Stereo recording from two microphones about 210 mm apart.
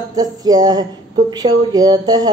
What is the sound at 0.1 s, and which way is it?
A woman's voice, 20° right (ahead or behind).